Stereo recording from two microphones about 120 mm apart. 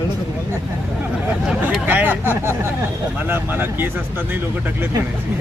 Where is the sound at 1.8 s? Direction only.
15° right (ahead or behind).